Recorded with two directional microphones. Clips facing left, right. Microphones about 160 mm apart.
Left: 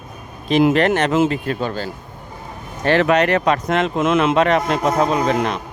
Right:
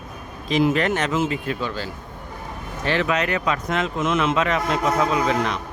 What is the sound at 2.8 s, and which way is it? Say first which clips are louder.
Speech: left 7 dB; 65° left (ahead or behind).